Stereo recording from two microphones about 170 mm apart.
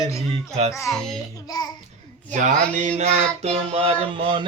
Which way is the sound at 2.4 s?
45° right (ahead or behind).